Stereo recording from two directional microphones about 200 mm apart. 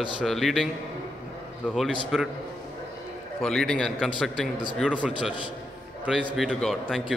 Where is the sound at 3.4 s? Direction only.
Centre (ahead or behind).